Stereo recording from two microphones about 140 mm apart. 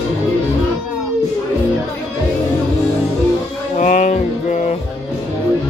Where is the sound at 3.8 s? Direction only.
60° left (ahead or behind).